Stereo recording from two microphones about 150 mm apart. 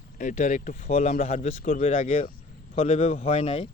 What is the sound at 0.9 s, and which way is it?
A man's voice, 50° left (ahead or behind).